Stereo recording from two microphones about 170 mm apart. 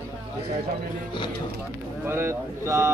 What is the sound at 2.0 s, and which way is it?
Speech, 15° right (ahead or behind).